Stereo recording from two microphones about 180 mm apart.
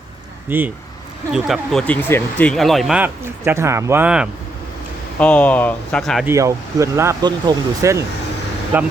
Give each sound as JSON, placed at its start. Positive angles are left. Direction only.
{"t": 0.4, "sound": "speech", "side_deg": -10}
{"t": 1.3, "sound": "speech", "side_deg": 0}
{"t": 5.2, "sound": "speech", "side_deg": 10}
{"t": 6.2, "sound": "speech", "side_deg": -15}